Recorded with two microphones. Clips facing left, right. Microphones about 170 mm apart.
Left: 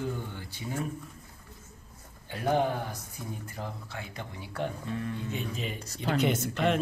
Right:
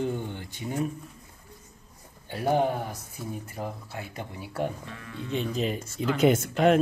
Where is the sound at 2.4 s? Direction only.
10° right (ahead or behind).